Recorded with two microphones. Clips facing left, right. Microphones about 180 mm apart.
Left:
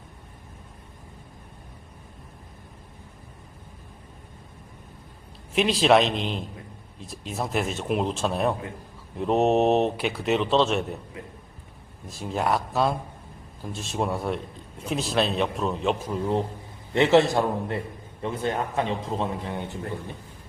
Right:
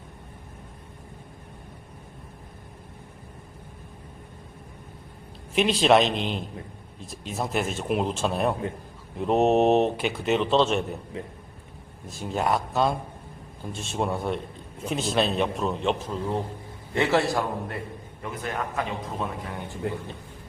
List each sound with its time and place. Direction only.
5.5 s speech: centre (ahead or behind)
12.0 s a man's voice: centre (ahead or behind); by 19.7 s 25° left (ahead or behind)